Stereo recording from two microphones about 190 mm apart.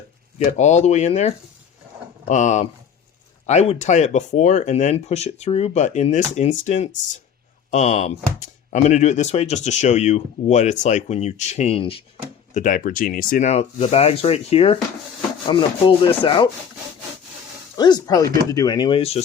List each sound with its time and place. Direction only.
0.3 s speech: 40° left (ahead or behind)
12.5 s speech: 45° left (ahead or behind)
15.4 s rub: 25° left (ahead or behind)
17.7 s rub: 20° left (ahead or behind)